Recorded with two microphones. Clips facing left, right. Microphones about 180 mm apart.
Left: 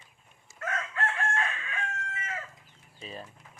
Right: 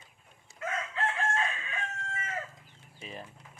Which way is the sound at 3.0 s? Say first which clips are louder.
Left 1 dB; 15° right (ahead or behind).